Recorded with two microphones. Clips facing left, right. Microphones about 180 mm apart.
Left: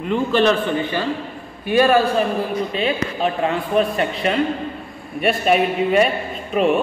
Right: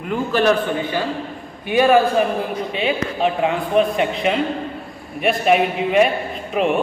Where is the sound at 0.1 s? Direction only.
10° right (ahead or behind).